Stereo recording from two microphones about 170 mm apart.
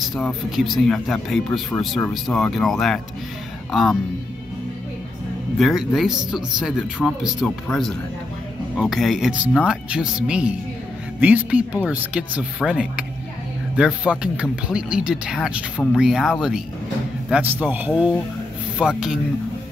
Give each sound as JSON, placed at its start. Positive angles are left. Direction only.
{"t": 0.1, "sound": "speech", "side_deg": 0}
{"t": 5.6, "sound": "speech", "side_deg": 0}